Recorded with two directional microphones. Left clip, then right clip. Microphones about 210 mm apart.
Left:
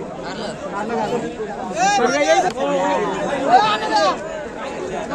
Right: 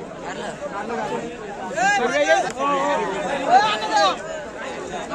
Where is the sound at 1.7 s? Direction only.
15° left (ahead or behind).